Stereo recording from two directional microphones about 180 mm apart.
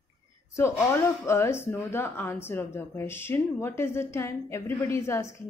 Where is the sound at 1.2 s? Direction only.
15° left (ahead or behind).